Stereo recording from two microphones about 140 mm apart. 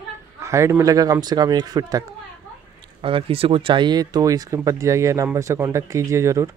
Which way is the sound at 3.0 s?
40° right (ahead or behind).